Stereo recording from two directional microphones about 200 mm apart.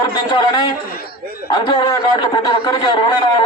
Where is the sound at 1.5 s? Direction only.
20° left (ahead or behind).